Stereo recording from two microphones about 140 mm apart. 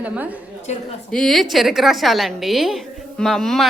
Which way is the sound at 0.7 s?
50° left (ahead or behind).